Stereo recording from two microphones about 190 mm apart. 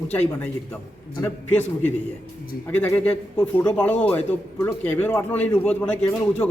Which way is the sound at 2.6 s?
10° left (ahead or behind).